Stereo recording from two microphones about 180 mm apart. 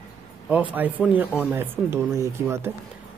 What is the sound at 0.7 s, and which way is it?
Speech, 10° right (ahead or behind).